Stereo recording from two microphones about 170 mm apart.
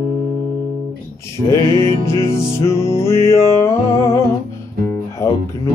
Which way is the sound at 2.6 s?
15° left (ahead or behind).